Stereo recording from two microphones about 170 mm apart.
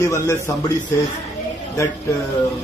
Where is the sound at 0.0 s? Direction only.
15° left (ahead or behind).